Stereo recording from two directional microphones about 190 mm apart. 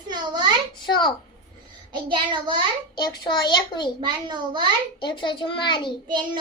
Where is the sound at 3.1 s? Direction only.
25° left (ahead or behind).